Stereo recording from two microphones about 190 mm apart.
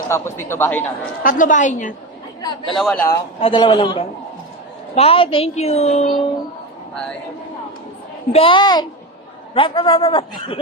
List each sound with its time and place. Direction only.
0.1 s a man's voice: 15° left (ahead or behind)
1.2 s a woman's voice: 45° left (ahead or behind)
2.4 s a man's voice: 20° left (ahead or behind)
3.4 s a man's voice: 25° left (ahead or behind)
8.3 s a man's voice: 30° left (ahead or behind)